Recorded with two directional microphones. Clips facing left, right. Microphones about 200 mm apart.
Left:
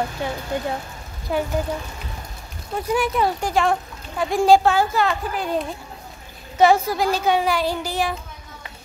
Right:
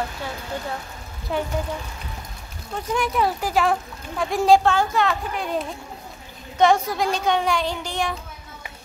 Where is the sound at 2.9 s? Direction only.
Centre (ahead or behind).